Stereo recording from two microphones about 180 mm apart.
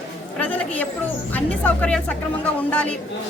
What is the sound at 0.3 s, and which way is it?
A woman's voice, 10° left (ahead or behind).